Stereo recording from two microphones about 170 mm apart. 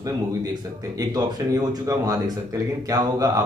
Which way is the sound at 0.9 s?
20° right (ahead or behind).